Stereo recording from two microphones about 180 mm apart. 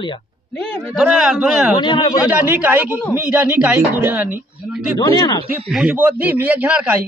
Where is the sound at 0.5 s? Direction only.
5° left (ahead or behind).